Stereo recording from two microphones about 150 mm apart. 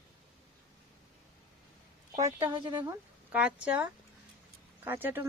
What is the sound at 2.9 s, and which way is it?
Speech, 10° right (ahead or behind).